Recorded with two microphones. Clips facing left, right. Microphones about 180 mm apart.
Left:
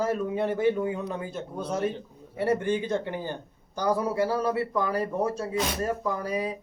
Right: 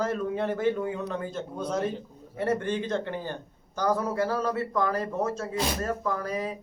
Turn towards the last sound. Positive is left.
turn(degrees=15)  # may be behind; listen again after turning